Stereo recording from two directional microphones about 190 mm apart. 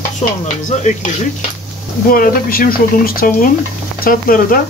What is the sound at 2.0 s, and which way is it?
Frying, 50° left (ahead or behind).